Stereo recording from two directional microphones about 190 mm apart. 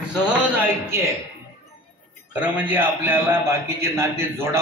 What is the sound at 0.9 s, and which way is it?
Speech, 15° right (ahead or behind).